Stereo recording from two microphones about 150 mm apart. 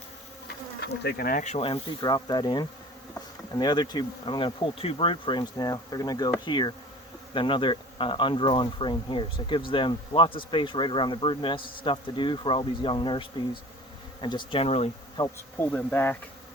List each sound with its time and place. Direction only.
1.0 s speech: 75° left (ahead or behind)
1.5 s speech: 35° left (ahead or behind)
15.2 s speech: 25° left (ahead or behind)
15.5 s speech: 10° left (ahead or behind)